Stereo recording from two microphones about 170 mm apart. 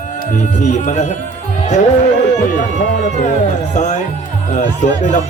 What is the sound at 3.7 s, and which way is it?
Speech, 45° left (ahead or behind).